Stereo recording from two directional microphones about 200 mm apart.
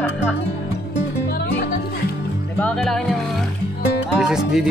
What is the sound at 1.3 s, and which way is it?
Music, 55° left (ahead or behind).